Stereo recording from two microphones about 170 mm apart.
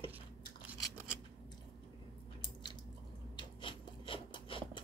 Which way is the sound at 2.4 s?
25° left (ahead or behind).